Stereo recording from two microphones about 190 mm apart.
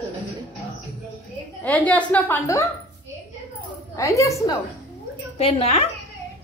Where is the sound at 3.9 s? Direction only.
15° left (ahead or behind).